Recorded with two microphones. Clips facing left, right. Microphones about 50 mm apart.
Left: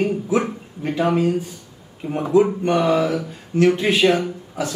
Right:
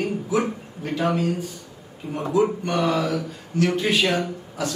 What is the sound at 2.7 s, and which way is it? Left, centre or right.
Speech, centre.